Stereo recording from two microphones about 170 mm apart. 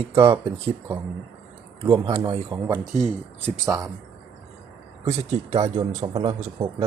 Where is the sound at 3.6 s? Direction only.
5° right (ahead or behind).